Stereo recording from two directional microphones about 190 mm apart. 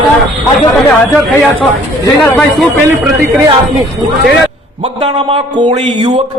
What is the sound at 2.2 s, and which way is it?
Speech, 5° left (ahead or behind).